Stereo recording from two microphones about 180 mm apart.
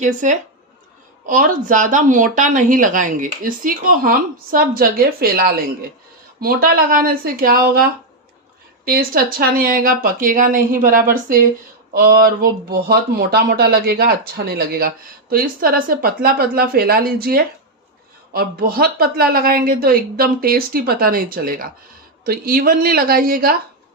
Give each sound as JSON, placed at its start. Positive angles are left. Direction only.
{"t": 0.0, "sound": "speech", "side_deg": -45}